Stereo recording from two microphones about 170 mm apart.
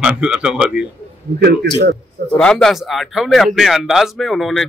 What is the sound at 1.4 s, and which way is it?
Speech, 75° right (ahead or behind).